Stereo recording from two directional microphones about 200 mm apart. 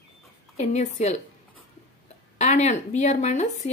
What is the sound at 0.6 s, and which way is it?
Speech, 35° left (ahead or behind).